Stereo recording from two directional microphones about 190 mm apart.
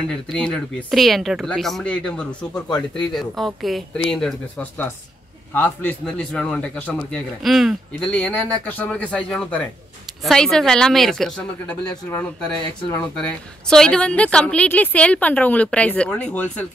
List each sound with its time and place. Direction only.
0.1 s a man's voice: 5° left (ahead or behind)
12.9 s a man's voice: 5° left (ahead or behind)